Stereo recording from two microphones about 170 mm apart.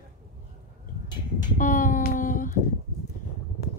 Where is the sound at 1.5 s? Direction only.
50° left (ahead or behind).